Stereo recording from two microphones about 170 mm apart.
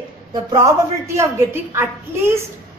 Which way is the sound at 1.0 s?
15° right (ahead or behind).